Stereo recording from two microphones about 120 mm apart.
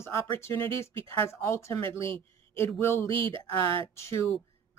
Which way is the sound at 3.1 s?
45° right (ahead or behind).